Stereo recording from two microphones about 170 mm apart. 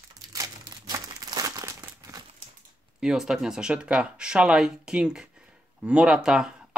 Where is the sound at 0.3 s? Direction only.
20° right (ahead or behind).